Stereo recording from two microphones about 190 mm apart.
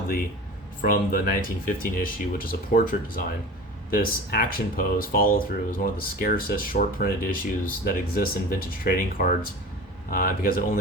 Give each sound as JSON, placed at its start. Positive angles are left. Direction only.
{"t": 0.8, "sound": "speech", "side_deg": 50}